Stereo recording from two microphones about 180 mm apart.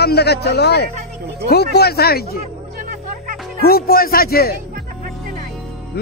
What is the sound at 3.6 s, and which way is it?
Speech, 55° left (ahead or behind).